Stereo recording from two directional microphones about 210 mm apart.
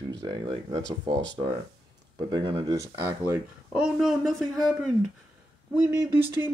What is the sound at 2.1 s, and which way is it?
Speech, 25° right (ahead or behind).